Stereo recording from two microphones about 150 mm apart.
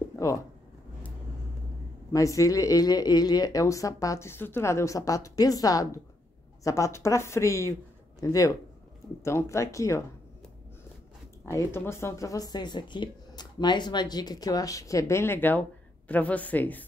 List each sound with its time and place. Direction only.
0.1 s a sound: 20° left (ahead or behind)
2.1 s speech: 20° left (ahead or behind)
11.5 s a woman's voice: 15° left (ahead or behind)